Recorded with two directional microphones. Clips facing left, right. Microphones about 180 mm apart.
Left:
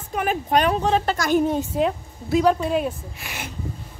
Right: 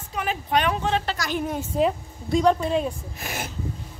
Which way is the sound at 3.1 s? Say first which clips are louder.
Right 3 dB; 40° right (ahead or behind).